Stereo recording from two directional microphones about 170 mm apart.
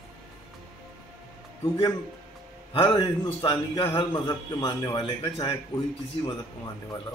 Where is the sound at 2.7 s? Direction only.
30° left (ahead or behind).